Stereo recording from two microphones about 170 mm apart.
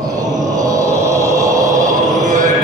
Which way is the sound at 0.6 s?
20° right (ahead or behind).